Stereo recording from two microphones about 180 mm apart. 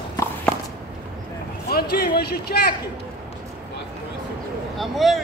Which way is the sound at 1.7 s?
60° left (ahead or behind).